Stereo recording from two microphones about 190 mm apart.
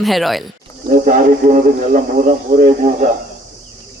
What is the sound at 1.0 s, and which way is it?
A man's voice, 45° right (ahead or behind).